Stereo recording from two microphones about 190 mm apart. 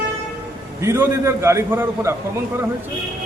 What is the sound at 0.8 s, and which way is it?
A man's voice, 15° right (ahead or behind).